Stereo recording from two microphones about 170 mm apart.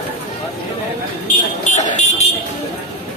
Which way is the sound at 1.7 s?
45° left (ahead or behind).